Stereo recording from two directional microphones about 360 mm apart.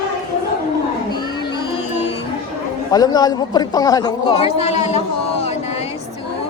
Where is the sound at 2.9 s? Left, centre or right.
Centre.